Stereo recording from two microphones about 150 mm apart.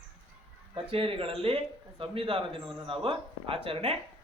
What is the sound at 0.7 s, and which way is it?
A man's voice, 35° right (ahead or behind).